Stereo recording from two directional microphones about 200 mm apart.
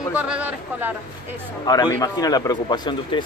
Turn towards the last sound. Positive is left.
turn(degrees=20)  # may be behind; listen again after turning